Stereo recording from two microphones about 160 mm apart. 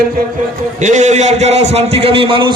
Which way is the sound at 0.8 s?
50° right (ahead or behind).